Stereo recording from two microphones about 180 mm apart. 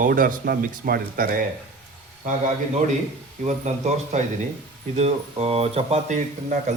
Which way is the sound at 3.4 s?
40° right (ahead or behind).